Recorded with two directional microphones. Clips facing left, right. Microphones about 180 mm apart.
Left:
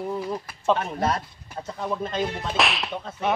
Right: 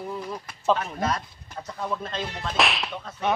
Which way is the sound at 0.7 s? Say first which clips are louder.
Left 2 dB; 30° left (ahead or behind).